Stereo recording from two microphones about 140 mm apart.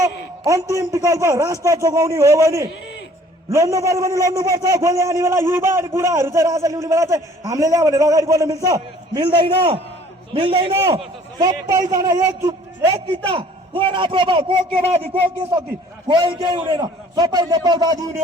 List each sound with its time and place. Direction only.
0.0 s a man's voice: 20° right (ahead or behind); by 10.8 s 40° right (ahead or behind)
11.3 s a man's voice: 30° right (ahead or behind)
13.2 s a man's voice: 40° right (ahead or behind)
16.0 s a man's voice: 35° right (ahead or behind)